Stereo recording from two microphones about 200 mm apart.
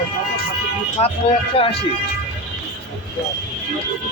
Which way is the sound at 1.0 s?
35° left (ahead or behind).